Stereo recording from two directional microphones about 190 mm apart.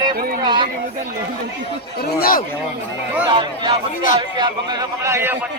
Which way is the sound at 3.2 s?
25° right (ahead or behind).